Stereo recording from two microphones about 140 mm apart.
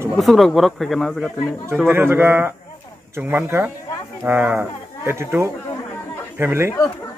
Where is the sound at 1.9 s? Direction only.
15° right (ahead or behind).